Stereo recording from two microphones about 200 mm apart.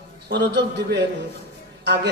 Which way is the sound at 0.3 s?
55° right (ahead or behind).